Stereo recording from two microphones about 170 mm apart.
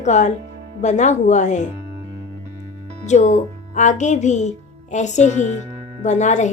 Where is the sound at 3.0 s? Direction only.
45° left (ahead or behind).